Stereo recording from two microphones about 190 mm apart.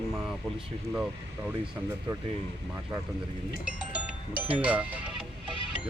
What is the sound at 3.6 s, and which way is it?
Speech, 5° right (ahead or behind).